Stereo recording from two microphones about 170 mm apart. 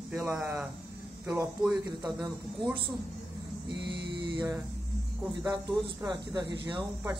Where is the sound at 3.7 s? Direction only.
25° right (ahead or behind).